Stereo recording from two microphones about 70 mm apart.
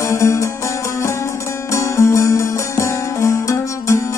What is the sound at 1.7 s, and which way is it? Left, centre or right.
Music, left.